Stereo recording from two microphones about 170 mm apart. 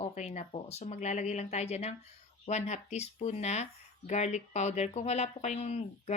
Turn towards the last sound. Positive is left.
turn(degrees=40)  # may be behind; listen again after turning